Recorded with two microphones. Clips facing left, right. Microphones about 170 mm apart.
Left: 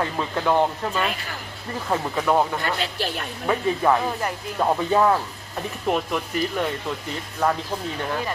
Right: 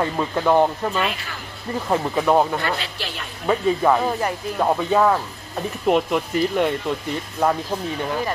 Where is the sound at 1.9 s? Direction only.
10° right (ahead or behind).